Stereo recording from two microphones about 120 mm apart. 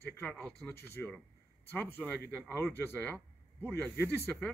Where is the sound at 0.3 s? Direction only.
5° left (ahead or behind).